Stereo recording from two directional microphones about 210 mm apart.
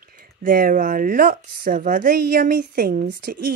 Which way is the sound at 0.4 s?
40° right (ahead or behind).